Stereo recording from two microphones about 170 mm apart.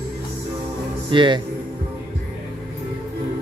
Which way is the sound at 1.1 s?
30° right (ahead or behind).